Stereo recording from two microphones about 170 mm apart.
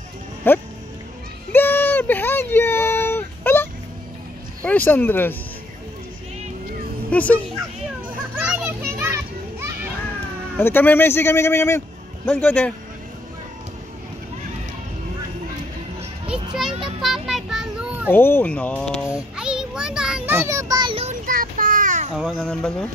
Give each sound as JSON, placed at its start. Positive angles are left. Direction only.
{"t": 0.5, "sound": "music", "side_deg": 10}
{"t": 1.5, "sound": "a sound", "side_deg": 10}
{"t": 4.6, "sound": "speech", "side_deg": 10}
{"t": 7.1, "sound": "speech", "side_deg": 10}
{"t": 8.5, "sound": "children playing", "side_deg": -10}
{"t": 10.6, "sound": "speech", "side_deg": 10}
{"t": 16.3, "sound": "children playing", "side_deg": 0}
{"t": 17.0, "sound": "a sound", "side_deg": 0}
{"t": 18.1, "sound": "speech", "side_deg": 10}
{"t": 19.1, "sound": "a sound", "side_deg": -5}
{"t": 21.3, "sound": "a sound", "side_deg": -55}
{"t": 22.1, "sound": "speech", "side_deg": 0}